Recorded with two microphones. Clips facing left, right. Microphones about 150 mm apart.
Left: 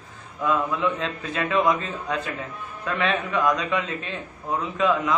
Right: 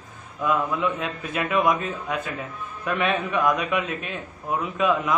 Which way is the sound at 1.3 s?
25° left (ahead or behind).